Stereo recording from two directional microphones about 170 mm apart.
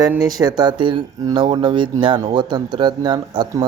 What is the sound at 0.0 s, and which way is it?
Speech, 20° right (ahead or behind).